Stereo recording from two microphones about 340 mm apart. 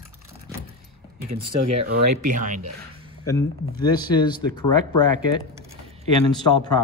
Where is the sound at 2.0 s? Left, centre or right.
Right.